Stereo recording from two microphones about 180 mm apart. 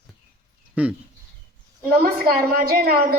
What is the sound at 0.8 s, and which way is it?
Speech, 10° right (ahead or behind).